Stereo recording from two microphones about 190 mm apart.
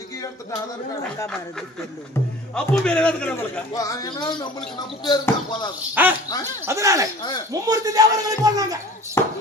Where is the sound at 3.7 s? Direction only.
20° left (ahead or behind).